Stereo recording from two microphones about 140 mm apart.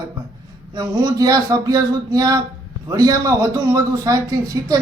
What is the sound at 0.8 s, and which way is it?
Speech, 25° right (ahead or behind).